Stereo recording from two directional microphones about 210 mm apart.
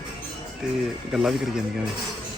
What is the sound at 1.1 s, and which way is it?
Speech, centre (ahead or behind).